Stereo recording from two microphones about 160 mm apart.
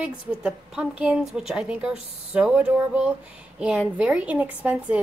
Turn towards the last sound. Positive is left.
turn(degrees=-10)  # may be behind; listen again after turning